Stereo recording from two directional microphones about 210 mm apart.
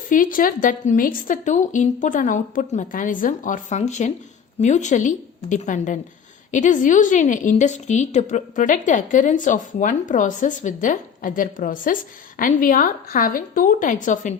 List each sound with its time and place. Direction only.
0.1 s a woman's voice: 40° left (ahead or behind)